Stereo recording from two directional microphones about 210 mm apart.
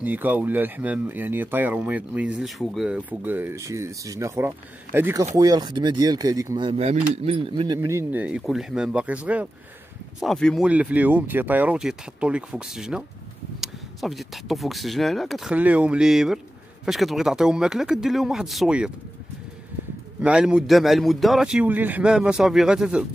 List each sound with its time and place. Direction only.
0.0 s speech: 10° right (ahead or behind)
6.7 s a man's voice: 30° right (ahead or behind); by 18.9 s 5° right (ahead or behind)
20.2 s a man's voice: 5° right (ahead or behind)